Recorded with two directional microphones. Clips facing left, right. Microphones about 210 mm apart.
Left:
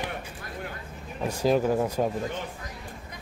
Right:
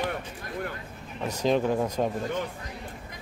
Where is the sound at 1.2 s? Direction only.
10° left (ahead or behind).